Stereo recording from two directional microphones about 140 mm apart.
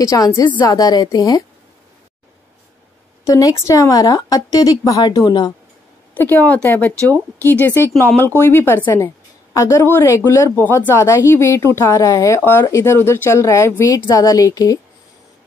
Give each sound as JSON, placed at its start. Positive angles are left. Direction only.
{"t": 0.0, "sound": "a woman's voice", "side_deg": 20}
{"t": 3.3, "sound": "a woman's voice", "side_deg": 25}
{"t": 6.1, "sound": "a woman's voice", "side_deg": 15}